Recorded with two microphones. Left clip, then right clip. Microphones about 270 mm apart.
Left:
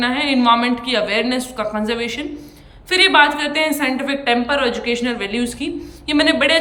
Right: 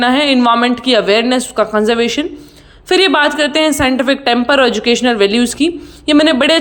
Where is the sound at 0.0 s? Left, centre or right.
Centre.